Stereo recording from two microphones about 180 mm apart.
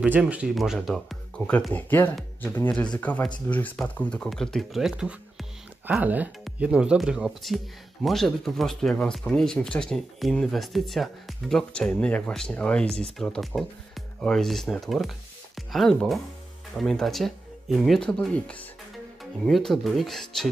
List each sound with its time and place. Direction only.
0.0 s speech: 5° right (ahead or behind)